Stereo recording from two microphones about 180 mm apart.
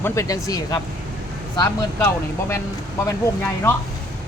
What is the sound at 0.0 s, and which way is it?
Speech, 15° left (ahead or behind).